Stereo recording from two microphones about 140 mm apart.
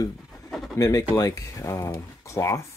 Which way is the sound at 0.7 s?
25° left (ahead or behind).